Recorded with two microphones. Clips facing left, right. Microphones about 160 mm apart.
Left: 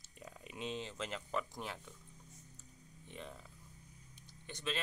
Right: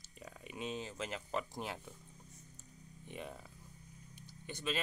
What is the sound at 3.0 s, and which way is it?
Speech, 15° right (ahead or behind).